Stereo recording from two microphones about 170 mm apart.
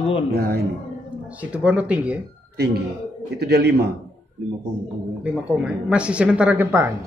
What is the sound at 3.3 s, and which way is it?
Speech, 75° right (ahead or behind).